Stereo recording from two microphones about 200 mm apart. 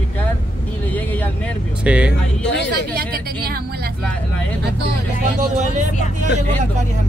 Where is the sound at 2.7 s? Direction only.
50° right (ahead or behind).